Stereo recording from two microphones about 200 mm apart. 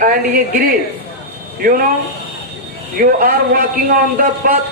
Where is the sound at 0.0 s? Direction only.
45° right (ahead or behind).